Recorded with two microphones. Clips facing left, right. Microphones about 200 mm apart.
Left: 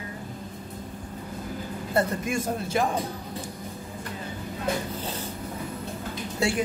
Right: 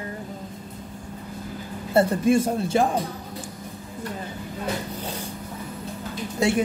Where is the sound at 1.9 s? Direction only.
30° right (ahead or behind).